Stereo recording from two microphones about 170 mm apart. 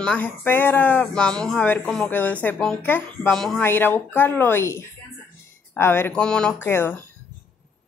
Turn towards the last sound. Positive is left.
turn(degrees=10)  # may be behind; listen again after turning